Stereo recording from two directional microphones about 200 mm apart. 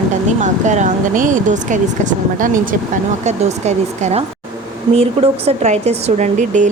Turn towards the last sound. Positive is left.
turn(degrees=-40)  # may be behind; listen again after turning